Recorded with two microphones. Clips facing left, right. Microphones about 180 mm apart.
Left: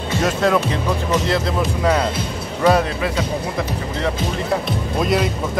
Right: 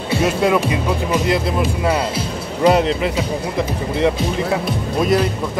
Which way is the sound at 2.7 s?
20° right (ahead or behind).